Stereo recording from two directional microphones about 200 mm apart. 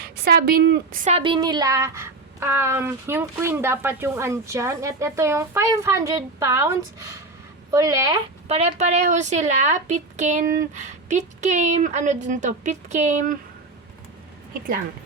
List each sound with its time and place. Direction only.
0.0 s speech: 50° right (ahead or behind)
1.0 s speech: 30° right (ahead or behind)
8.4 s a woman's voice: 30° right (ahead or behind)